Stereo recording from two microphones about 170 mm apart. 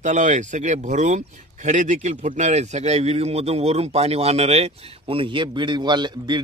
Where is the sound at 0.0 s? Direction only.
45° right (ahead or behind).